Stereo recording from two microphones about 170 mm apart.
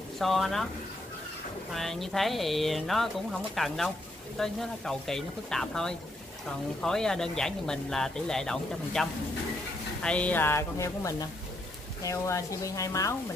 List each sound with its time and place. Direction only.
0.2 s speech: centre (ahead or behind)
1.7 s speech: centre (ahead or behind); by 13.1 s 20° left (ahead or behind)